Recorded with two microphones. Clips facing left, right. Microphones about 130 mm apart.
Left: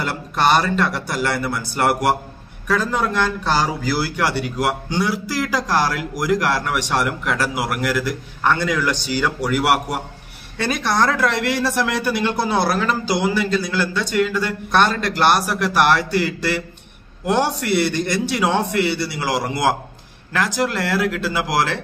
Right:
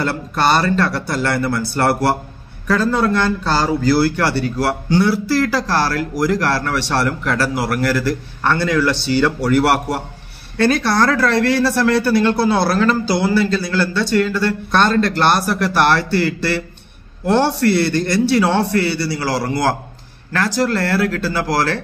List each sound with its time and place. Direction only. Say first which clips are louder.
0.0 s a man's voice: right 2 dB; 15° left (ahead or behind)